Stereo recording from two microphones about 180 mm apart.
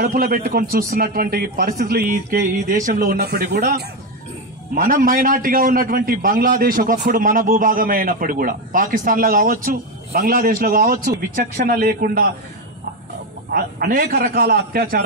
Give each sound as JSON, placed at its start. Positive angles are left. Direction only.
{"t": 0.0, "sound": "a man's voice", "side_deg": -50}
{"t": 4.7, "sound": "a man's voice", "side_deg": -50}
{"t": 13.5, "sound": "speech", "side_deg": -55}